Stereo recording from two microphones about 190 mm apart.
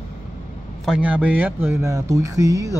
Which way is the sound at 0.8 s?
5° right (ahead or behind).